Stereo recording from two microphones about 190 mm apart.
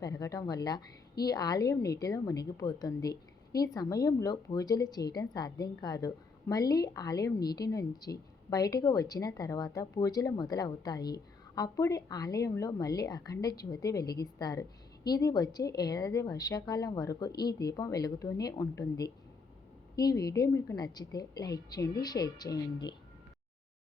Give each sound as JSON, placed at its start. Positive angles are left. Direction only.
{"t": 0.0, "sound": "a woman's voice", "side_deg": 20}